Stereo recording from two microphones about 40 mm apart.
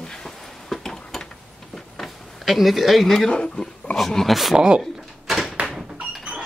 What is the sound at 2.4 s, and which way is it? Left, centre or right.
Speech, centre.